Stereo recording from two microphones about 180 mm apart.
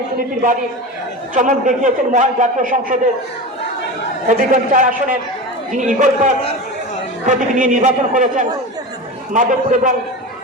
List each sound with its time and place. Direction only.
1.3 s a man's voice: 45° right (ahead or behind)
4.3 s a man's voice: 50° right (ahead or behind)
9.3 s a man's voice: 45° right (ahead or behind)